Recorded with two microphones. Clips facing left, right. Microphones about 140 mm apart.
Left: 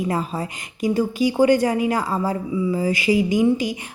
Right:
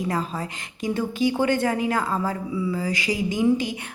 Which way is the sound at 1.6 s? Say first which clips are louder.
Left 3 dB; 10° left (ahead or behind).